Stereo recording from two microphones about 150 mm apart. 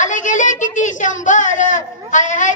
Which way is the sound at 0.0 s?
55° left (ahead or behind).